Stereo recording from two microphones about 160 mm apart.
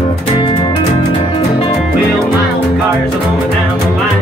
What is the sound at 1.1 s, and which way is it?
Music, 35° left (ahead or behind).